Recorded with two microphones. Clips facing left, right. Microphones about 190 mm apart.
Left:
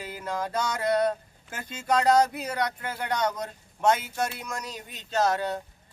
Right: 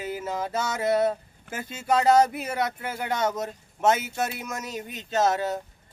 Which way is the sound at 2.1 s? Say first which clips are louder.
Right 2 dB; 25° right (ahead or behind).